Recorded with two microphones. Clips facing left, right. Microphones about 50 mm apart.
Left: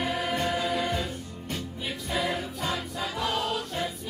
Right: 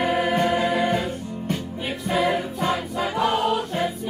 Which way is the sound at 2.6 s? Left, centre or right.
Right.